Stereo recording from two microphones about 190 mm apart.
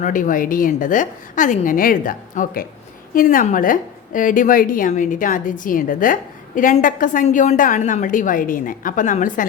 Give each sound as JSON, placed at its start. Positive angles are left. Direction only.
{"t": 0.0, "sound": "a woman's voice", "side_deg": 45}